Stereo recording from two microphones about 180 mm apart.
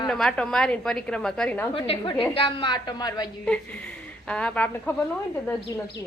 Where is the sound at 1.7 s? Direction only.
30° left (ahead or behind).